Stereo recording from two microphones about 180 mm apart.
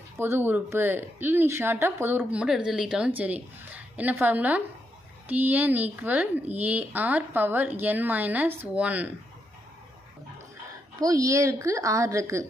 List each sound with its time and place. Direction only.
0.2 s speech: 10° right (ahead or behind)
11.0 s speech: 20° right (ahead or behind)